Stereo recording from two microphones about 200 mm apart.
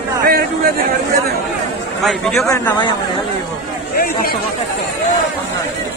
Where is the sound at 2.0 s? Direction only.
Centre (ahead or behind).